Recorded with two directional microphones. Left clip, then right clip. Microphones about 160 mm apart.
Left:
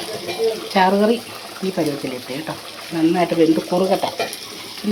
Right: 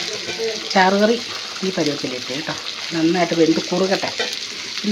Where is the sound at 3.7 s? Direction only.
35° right (ahead or behind).